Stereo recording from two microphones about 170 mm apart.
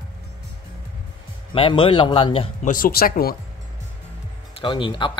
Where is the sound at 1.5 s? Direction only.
30° left (ahead or behind).